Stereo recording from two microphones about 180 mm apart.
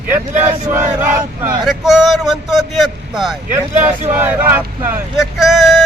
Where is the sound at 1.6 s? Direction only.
Centre (ahead or behind).